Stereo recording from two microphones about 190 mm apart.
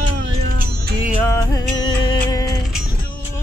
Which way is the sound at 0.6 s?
50° right (ahead or behind).